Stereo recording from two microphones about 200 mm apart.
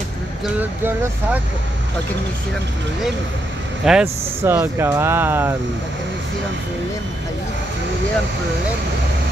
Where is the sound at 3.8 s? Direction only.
5° right (ahead or behind).